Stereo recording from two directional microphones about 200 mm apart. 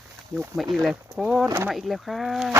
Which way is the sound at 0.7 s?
Centre (ahead or behind).